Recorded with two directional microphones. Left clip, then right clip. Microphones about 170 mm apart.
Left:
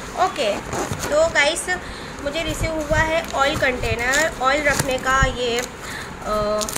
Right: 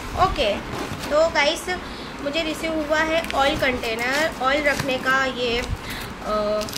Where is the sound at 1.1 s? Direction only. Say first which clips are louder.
Left 1 dB; 5° left (ahead or behind).